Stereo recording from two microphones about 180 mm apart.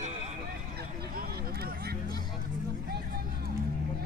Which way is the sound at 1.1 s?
55° right (ahead or behind).